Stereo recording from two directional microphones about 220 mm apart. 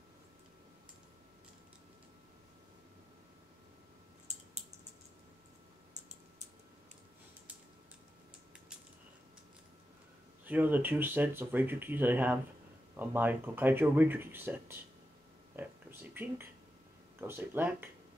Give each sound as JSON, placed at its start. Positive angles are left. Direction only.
{"t": 4.3, "sound": "typing", "side_deg": -30}
{"t": 10.4, "sound": "speech", "side_deg": -10}
{"t": 15.5, "sound": "a sound", "side_deg": -10}
{"t": 17.2, "sound": "speech", "side_deg": -10}